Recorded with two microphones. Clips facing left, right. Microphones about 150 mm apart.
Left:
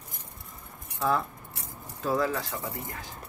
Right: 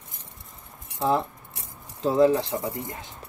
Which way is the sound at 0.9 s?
20° right (ahead or behind).